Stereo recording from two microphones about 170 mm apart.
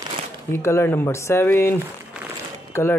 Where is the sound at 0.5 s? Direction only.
15° left (ahead or behind).